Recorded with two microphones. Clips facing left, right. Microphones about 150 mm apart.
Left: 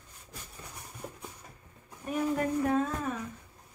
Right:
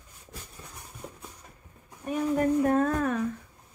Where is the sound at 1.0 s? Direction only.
5° left (ahead or behind).